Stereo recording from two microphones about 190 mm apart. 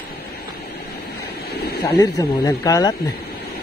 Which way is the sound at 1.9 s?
20° left (ahead or behind).